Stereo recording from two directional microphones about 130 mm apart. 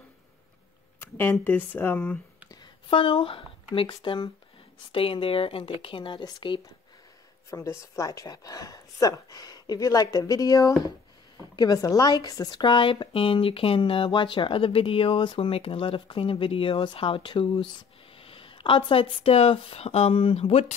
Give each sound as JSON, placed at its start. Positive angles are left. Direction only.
{"t": 0.9, "sound": "speech", "side_deg": 15}
{"t": 2.6, "sound": "speech", "side_deg": 40}
{"t": 7.5, "sound": "a woman's voice", "side_deg": 20}